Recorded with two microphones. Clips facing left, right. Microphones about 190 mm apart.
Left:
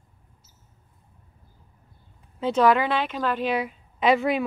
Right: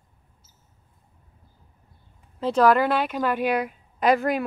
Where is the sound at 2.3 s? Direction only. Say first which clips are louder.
Right 1 dB; centre (ahead or behind).